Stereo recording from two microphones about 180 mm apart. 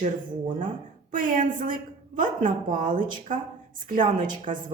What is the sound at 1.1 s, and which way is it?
A woman's voice, 50° right (ahead or behind).